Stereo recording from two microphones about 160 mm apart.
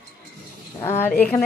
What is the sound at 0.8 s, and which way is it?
Speech, 15° left (ahead or behind).